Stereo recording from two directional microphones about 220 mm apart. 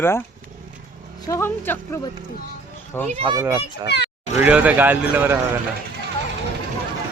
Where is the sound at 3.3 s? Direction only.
15° right (ahead or behind).